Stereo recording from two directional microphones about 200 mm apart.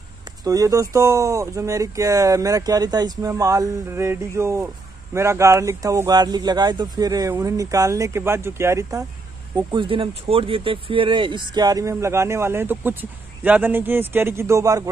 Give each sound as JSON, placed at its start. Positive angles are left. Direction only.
{"t": 0.4, "sound": "speech", "side_deg": -15}
{"t": 9.7, "sound": "speech", "side_deg": -25}